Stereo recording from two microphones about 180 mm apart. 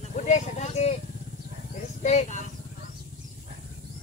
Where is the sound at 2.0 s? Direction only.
40° left (ahead or behind).